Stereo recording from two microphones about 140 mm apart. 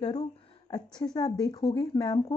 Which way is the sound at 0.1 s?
30° left (ahead or behind).